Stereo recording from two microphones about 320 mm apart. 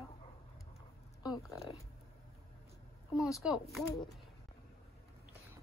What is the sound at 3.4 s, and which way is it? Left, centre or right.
Speech, centre.